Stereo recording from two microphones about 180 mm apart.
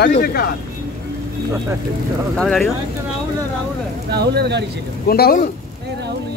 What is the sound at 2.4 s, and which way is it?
Speech, 5° left (ahead or behind).